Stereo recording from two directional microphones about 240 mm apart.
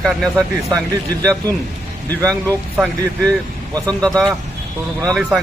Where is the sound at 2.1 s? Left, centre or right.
Centre.